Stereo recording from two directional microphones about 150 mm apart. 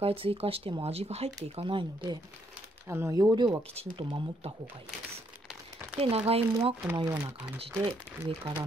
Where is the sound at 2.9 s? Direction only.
20° right (ahead or behind); by 4.5 s 35° right (ahead or behind).